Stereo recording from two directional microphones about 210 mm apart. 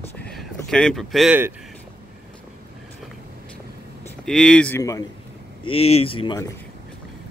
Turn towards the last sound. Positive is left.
turn(degrees=20)  # may be behind; listen again after turning